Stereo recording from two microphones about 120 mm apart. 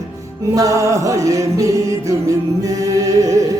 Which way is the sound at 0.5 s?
25° right (ahead or behind).